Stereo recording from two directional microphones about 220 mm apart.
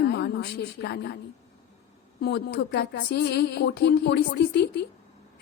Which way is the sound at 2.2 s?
45° left (ahead or behind).